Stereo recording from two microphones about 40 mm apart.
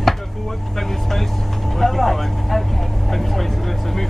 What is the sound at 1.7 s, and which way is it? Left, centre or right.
Vehicle, centre.